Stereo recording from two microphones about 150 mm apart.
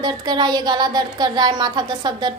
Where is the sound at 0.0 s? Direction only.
30° right (ahead or behind).